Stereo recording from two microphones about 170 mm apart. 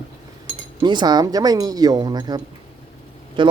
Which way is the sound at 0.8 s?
25° right (ahead or behind).